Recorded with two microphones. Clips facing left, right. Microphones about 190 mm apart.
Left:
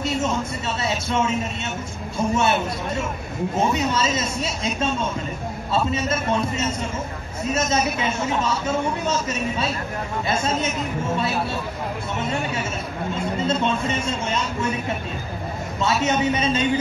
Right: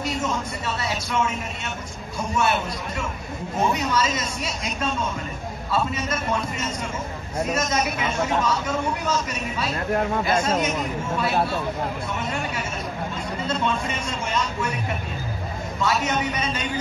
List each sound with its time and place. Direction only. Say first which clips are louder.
0.8 s a man's voice: left 3 dB; 25° left (ahead or behind)
3.5 s a man's voice: even; 25° left (ahead or behind)
7.5 s a man's voice: left 5 dB; 25° left (ahead or behind)
13.5 s a man's voice: left 1 dB; 25° left (ahead or behind)
15.8 s a man's voice: left 3 dB; 25° left (ahead or behind)